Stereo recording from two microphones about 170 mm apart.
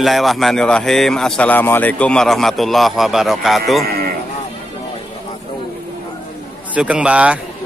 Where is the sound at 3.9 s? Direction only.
60° right (ahead or behind).